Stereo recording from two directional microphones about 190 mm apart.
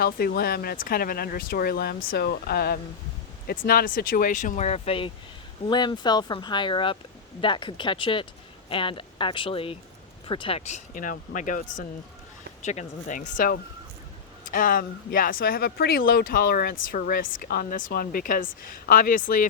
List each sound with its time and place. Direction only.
0.0 s speech: 55° left (ahead or behind)
2.0 s speech: 75° left (ahead or behind); by 19.5 s 45° left (ahead or behind)